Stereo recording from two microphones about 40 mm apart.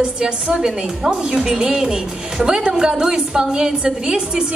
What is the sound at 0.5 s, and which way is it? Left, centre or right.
A woman's voice, centre.